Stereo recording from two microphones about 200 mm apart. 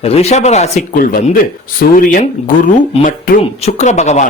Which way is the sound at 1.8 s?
45° left (ahead or behind).